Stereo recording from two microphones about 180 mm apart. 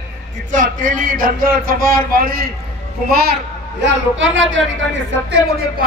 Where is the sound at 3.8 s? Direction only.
85° right.